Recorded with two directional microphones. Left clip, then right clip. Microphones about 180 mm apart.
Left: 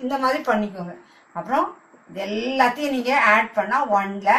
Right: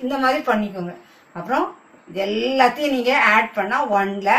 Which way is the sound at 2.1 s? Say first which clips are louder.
Right 3 dB; 15° right (ahead or behind).